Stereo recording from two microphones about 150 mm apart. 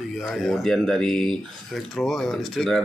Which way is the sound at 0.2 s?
5° left (ahead or behind).